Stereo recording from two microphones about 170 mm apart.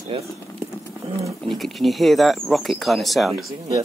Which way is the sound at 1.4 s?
Centre (ahead or behind).